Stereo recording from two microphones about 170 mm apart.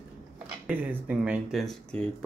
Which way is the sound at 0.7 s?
10° right (ahead or behind).